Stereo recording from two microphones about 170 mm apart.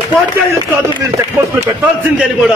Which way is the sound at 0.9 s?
20° right (ahead or behind).